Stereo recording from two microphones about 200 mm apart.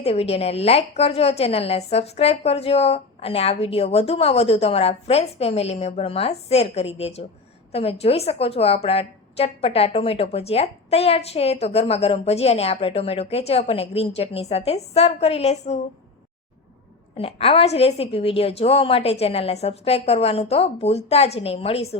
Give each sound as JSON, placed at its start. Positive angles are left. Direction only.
{"t": 0.0, "sound": "a woman's voice", "side_deg": 30}
{"t": 17.2, "sound": "a woman's voice", "side_deg": 30}